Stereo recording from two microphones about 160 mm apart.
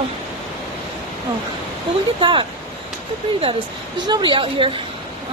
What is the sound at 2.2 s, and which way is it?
Speech, 30° right (ahead or behind).